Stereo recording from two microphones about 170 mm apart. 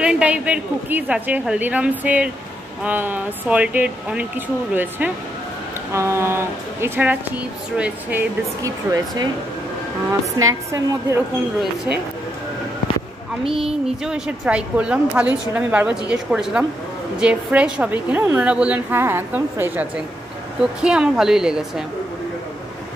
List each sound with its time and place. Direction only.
0.0 s a woman's voice: 5° right (ahead or behind)
10.4 s a woman's voice: 20° right (ahead or behind)
13.5 s a woman's voice: 5° right (ahead or behind)